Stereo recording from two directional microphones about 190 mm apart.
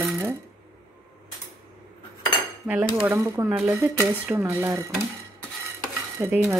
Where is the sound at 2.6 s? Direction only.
10° right (ahead or behind).